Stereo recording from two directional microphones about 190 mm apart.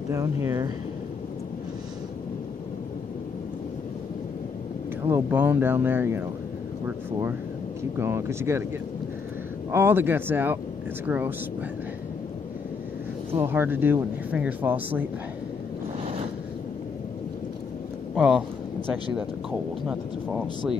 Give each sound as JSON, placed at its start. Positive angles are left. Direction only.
{"t": 0.1, "sound": "speech", "side_deg": -15}
{"t": 5.0, "sound": "speech", "side_deg": -10}
{"t": 8.0, "sound": "speech", "side_deg": -15}
{"t": 9.7, "sound": "speech", "side_deg": -10}
{"t": 13.3, "sound": "speech", "side_deg": -10}
{"t": 18.1, "sound": "speech", "side_deg": -5}
{"t": 19.9, "sound": "speech", "side_deg": -5}